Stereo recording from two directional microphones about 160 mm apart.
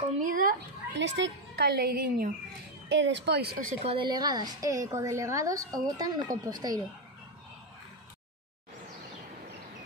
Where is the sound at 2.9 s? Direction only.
90° right.